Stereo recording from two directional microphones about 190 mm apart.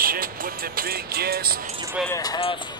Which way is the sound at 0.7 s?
55° right (ahead or behind).